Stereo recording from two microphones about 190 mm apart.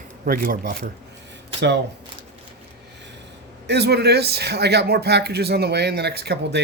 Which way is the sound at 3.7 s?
60° right (ahead or behind).